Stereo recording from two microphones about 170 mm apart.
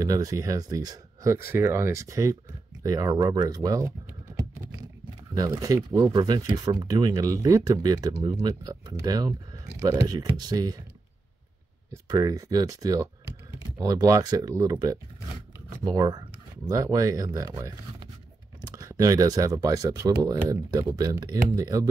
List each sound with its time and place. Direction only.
0.0 s speech: 20° right (ahead or behind)
5.4 s speech: 20° right (ahead or behind)
11.9 s speech: 20° right (ahead or behind)